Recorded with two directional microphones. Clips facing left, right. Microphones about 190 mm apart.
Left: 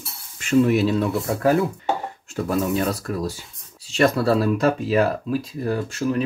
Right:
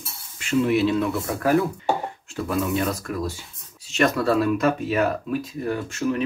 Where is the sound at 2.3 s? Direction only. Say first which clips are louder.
Left 2 dB; 40° left (ahead or behind).